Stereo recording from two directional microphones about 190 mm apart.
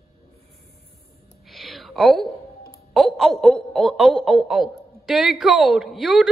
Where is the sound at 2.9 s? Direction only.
Centre (ahead or behind).